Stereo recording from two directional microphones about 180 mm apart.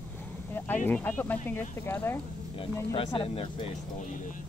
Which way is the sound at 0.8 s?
10° left (ahead or behind).